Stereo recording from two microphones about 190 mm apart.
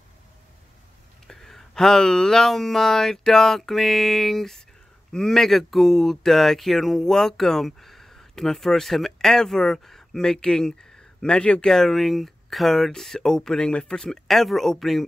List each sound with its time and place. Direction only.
1.2 s speech: centre (ahead or behind)